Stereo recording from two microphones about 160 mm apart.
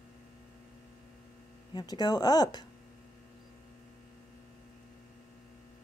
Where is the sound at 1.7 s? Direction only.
25° left (ahead or behind).